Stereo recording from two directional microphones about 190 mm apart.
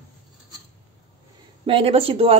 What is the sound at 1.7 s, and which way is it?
Speech, 30° right (ahead or behind).